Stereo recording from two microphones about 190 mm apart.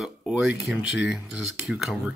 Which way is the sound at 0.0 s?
Centre (ahead or behind).